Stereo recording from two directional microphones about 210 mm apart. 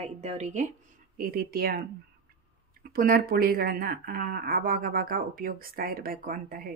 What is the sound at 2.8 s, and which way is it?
Speech, 45° right (ahead or behind).